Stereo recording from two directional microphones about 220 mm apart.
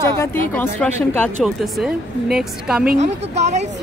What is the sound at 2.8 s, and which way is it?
Speech, 30° right (ahead or behind).